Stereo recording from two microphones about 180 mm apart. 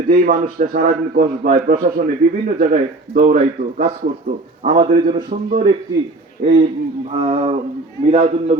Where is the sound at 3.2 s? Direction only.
45° right (ahead or behind).